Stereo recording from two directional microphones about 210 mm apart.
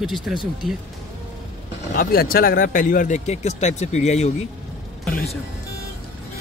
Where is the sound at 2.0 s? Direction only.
45° left (ahead or behind).